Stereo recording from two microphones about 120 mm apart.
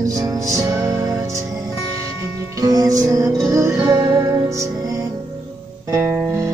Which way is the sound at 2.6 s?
30° right (ahead or behind).